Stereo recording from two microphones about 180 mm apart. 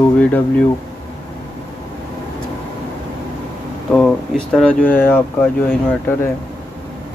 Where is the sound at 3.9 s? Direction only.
5° left (ahead or behind).